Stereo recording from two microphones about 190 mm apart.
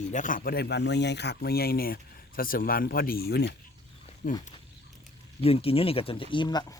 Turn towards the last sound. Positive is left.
turn(degrees=20)  # may be behind; listen again after turning